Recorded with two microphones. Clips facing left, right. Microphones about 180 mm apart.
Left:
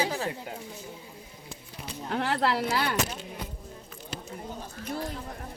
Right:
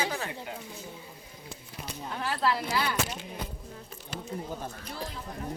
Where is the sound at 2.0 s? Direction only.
70° left (ahead or behind).